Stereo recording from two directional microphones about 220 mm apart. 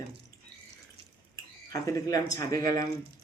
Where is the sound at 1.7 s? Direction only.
15° left (ahead or behind).